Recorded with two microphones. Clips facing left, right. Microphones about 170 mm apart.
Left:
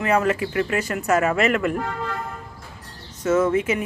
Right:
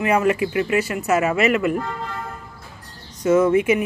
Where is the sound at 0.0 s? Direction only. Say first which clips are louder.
Right 2 dB; 10° right (ahead or behind).